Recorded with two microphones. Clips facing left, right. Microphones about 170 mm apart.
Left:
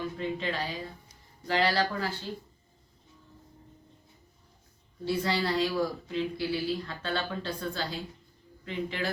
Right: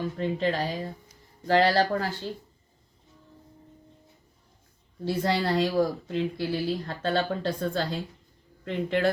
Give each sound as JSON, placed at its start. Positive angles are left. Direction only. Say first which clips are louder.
{"t": 0.0, "sound": "speech", "louder": "right 5 dB", "side_deg": -40}
{"t": 5.0, "sound": "speech", "louder": "right 3 dB", "side_deg": -45}